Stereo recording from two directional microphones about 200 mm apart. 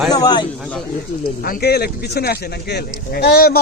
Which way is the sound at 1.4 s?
50° left (ahead or behind).